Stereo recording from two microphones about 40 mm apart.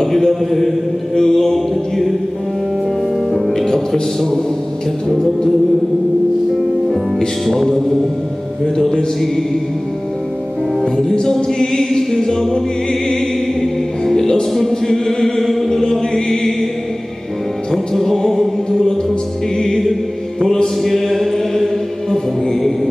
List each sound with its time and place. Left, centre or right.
0.0 s mantra: centre
0.3 s music: centre
1.1 s music: centre
3.3 s music: centre
3.5 s music: centre
7.2 s music: centre
8.7 s music: centre
10.8 s music: centre
15.8 s chant: centre
17.6 s music: centre
19.6 s chant: centre
20.8 s music: centre